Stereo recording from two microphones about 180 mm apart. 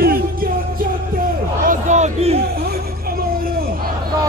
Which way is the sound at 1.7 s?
40° right (ahead or behind).